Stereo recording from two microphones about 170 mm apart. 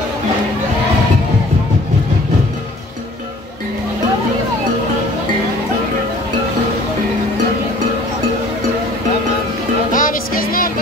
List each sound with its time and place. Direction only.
9.9 s music: 55° left (ahead or behind)